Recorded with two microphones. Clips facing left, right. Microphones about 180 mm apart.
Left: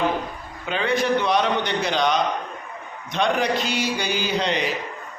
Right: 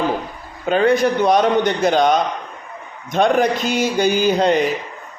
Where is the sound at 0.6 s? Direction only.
45° right (ahead or behind).